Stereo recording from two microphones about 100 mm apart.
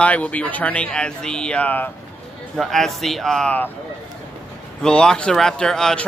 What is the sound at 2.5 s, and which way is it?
Speech, centre (ahead or behind).